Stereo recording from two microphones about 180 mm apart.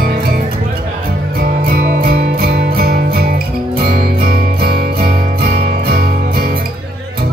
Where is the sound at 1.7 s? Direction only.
55° right (ahead or behind).